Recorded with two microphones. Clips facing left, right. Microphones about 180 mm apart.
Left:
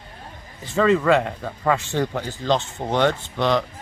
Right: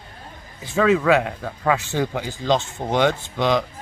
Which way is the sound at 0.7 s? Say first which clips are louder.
Even; 5° right (ahead or behind).